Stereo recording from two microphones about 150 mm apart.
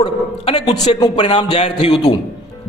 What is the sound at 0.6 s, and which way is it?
Speech, 30° left (ahead or behind).